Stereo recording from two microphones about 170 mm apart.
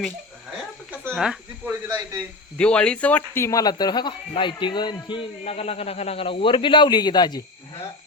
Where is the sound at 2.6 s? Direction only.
5° left (ahead or behind); by 5.0 s 25° left (ahead or behind).